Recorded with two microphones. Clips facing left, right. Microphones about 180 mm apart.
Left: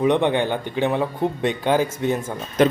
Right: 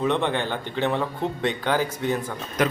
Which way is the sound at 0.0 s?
15° left (ahead or behind).